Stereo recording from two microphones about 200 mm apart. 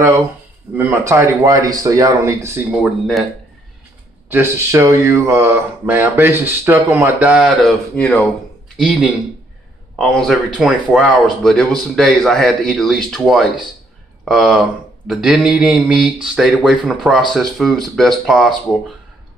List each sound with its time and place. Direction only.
0.7 s speech: 10° right (ahead or behind)
2.8 s speech: centre (ahead or behind)
4.3 s speech: 15° right (ahead or behind)